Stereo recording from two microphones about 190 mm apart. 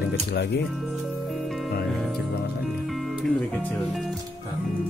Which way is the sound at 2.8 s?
Centre (ahead or behind).